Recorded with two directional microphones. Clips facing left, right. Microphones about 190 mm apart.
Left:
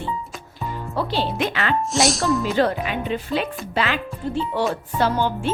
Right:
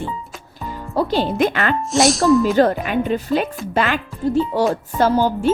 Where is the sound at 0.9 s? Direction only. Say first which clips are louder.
Right 6 dB; 45° right (ahead or behind).